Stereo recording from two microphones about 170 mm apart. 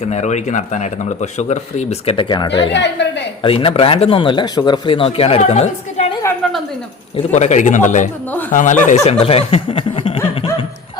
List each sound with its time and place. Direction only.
0.0 s speech: 40° left (ahead or behind)
2.7 s a woman's voice: 90° left
3.4 s speech: 30° left (ahead or behind)
6.4 s a sound: centre (ahead or behind)
7.2 s speech: 40° left (ahead or behind)
9.2 s speech: 35° left (ahead or behind)